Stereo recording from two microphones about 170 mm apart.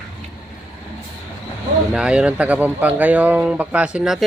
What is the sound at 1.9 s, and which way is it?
Speech, 5° right (ahead or behind).